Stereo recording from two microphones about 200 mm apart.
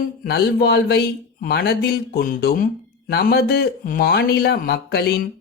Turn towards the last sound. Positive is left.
turn(degrees=50)  # may be behind; listen again after turning